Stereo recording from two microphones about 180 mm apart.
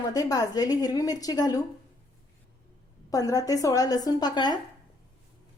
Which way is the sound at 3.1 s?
20° left (ahead or behind).